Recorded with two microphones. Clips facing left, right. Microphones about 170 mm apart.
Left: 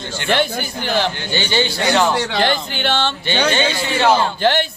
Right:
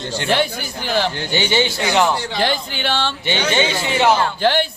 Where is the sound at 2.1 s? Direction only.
75° left (ahead or behind).